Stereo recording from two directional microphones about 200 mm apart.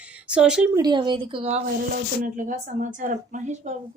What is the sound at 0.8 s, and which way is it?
A woman's voice, 20° right (ahead or behind).